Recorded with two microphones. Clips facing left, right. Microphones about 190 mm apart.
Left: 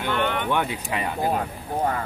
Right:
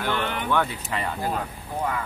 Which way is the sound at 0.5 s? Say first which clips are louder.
Even; 15° left (ahead or behind).